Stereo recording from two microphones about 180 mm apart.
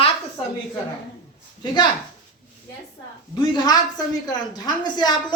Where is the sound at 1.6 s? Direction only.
25° left (ahead or behind).